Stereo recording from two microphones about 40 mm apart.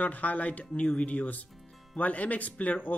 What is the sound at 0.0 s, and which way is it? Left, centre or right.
Speech, left.